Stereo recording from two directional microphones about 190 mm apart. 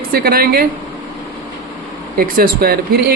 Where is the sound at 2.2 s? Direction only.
50° right (ahead or behind).